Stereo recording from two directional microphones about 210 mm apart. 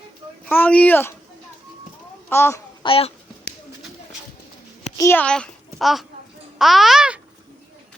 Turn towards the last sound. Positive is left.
turn(degrees=-5)  # may be behind; listen again after turning